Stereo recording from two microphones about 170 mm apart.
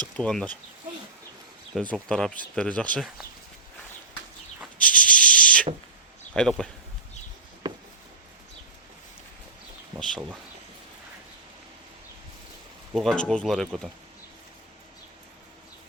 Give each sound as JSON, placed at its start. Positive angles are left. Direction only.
{"t": 0.2, "sound": "speech", "side_deg": 5}
{"t": 1.7, "sound": "speech", "side_deg": 5}
{"t": 4.8, "sound": "rub", "side_deg": 5}
{"t": 6.3, "sound": "speech", "side_deg": 5}
{"t": 10.0, "sound": "speech", "side_deg": 5}
{"t": 12.9, "sound": "speech", "side_deg": 5}